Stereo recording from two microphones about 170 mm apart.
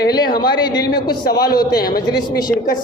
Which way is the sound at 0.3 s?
25° left (ahead or behind).